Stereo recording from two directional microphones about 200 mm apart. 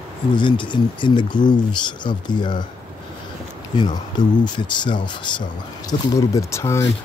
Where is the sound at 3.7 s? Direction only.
20° left (ahead or behind).